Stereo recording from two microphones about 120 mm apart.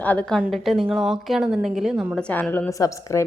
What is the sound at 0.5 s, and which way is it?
Speech, centre (ahead or behind).